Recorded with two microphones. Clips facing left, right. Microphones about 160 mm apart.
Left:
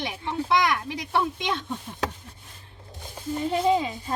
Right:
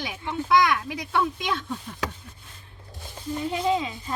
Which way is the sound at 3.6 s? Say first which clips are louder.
Left 3 dB; 30° left (ahead or behind).